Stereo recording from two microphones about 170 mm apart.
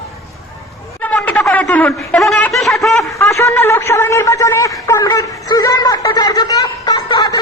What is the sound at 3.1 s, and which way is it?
A man's voice, 15° left (ahead or behind).